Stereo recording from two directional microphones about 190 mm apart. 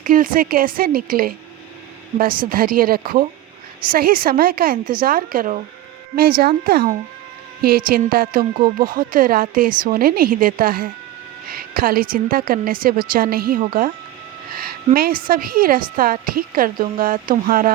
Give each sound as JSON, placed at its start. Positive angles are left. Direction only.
{"t": 0.0, "sound": "a woman's voice", "side_deg": -45}
{"t": 2.5, "sound": "a woman's voice", "side_deg": -50}